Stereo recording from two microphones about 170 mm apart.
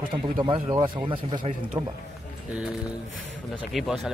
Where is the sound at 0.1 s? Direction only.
30° right (ahead or behind).